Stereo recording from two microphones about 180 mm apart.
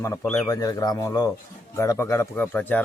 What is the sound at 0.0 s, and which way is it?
Speech, 15° left (ahead or behind).